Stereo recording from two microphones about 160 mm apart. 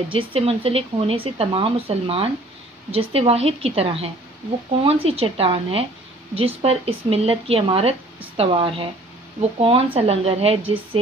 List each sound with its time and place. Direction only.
0.1 s speech: 35° right (ahead or behind)